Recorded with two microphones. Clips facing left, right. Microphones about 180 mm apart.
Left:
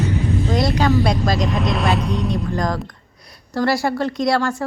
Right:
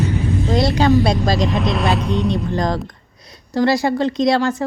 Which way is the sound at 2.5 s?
25° right (ahead or behind).